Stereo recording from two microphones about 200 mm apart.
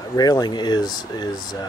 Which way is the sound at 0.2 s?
20° left (ahead or behind).